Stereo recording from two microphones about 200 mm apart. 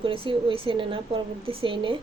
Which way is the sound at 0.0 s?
25° right (ahead or behind).